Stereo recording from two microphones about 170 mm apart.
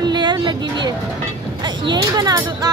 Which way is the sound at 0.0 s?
25° right (ahead or behind).